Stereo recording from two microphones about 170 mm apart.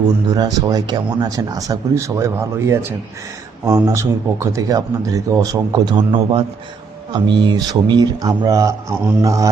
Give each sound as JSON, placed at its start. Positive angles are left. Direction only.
{"t": 0.0, "sound": "speech", "side_deg": -25}
{"t": 3.8, "sound": "speech", "side_deg": -20}